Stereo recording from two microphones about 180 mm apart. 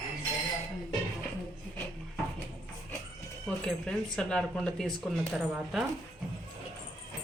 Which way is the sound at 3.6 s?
5° left (ahead or behind).